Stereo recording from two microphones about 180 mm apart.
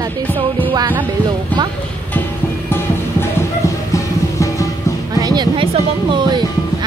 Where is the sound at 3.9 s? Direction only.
15° left (ahead or behind).